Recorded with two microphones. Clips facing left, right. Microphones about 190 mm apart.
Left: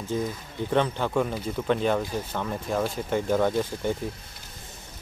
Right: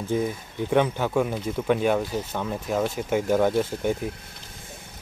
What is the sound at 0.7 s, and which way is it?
Speech, 10° right (ahead or behind).